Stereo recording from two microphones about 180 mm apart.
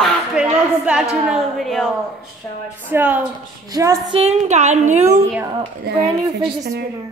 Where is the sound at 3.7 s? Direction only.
20° right (ahead or behind).